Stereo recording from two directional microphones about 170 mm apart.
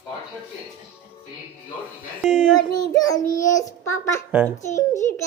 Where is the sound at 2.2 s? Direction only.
Centre (ahead or behind).